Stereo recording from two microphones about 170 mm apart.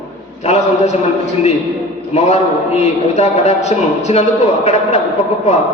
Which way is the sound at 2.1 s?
40° left (ahead or behind).